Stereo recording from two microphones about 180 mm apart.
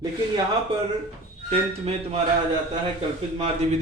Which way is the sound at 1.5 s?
35° right (ahead or behind).